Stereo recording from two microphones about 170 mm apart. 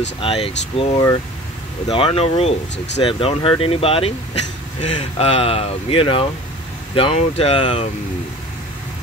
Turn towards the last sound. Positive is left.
turn(degrees=35)  # may be behind; listen again after turning